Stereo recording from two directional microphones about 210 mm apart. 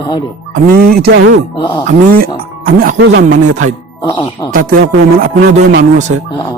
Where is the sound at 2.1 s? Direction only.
45° right (ahead or behind).